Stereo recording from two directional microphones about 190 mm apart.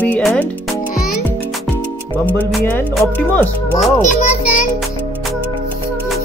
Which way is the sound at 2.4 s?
10° left (ahead or behind).